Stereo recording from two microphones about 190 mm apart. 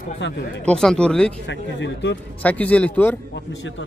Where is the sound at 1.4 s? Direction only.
70° left (ahead or behind).